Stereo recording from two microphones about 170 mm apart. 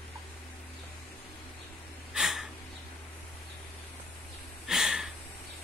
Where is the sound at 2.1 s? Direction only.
Centre (ahead or behind).